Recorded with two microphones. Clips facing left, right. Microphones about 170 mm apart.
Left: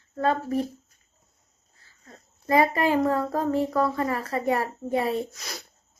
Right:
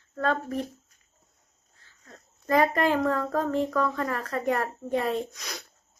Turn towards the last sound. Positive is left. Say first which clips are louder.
# left 1 dB
turn(degrees=0)  # may be behind; listen again after turning